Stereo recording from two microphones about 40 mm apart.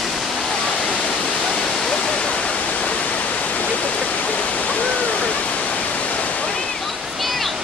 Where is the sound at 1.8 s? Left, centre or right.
Centre.